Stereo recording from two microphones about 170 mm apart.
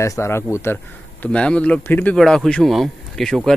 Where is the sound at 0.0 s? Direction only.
15° left (ahead or behind).